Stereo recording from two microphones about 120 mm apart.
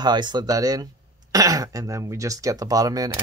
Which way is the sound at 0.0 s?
35° right (ahead or behind).